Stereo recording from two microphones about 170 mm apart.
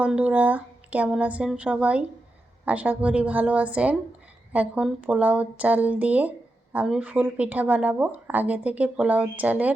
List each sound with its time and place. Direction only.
0.0 s speech: 5° right (ahead or behind)